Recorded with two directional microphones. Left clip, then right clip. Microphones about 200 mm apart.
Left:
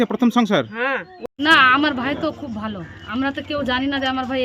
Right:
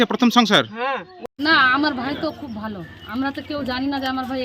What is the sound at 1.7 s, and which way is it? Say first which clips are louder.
Speech: left 2 dB; 5° left (ahead or behind).